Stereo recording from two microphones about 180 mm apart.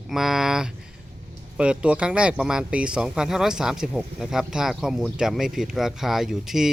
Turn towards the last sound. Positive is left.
turn(degrees=0)  # may be behind; listen again after turning